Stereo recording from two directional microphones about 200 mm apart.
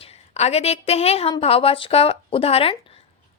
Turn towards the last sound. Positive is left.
turn(degrees=30)  # may be behind; listen again after turning